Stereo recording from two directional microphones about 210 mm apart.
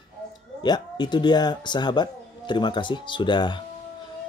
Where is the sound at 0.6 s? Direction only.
20° left (ahead or behind).